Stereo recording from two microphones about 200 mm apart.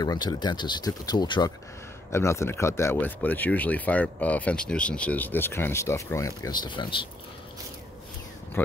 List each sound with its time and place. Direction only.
0.0 s speech: 20° left (ahead or behind)
8.6 s speech: 10° left (ahead or behind)